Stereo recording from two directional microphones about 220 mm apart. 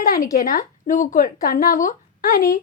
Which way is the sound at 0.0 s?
40° left (ahead or behind).